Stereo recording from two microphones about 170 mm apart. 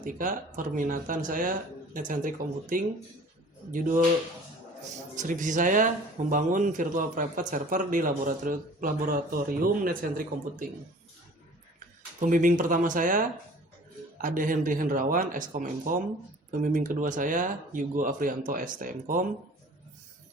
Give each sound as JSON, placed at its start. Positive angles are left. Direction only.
{"t": 0.0, "sound": "a man's voice", "side_deg": -55}
{"t": 5.1, "sound": "a man's voice", "side_deg": -50}
{"t": 12.2, "sound": "a man's voice", "side_deg": -50}